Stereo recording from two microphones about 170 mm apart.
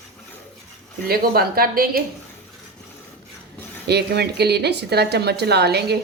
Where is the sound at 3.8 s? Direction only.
75° right (ahead or behind).